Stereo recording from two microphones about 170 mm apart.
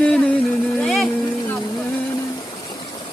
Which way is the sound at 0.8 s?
Centre (ahead or behind).